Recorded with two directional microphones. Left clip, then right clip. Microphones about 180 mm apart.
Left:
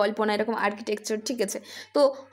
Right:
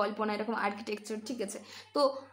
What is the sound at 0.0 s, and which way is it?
Speech, 30° left (ahead or behind).